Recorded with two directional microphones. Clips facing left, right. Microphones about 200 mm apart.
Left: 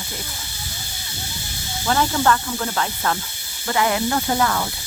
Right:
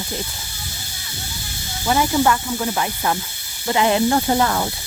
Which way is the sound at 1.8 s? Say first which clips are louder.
Right 2 dB; 10° right (ahead or behind).